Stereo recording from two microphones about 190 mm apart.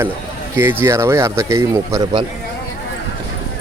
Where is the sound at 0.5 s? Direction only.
10° right (ahead or behind).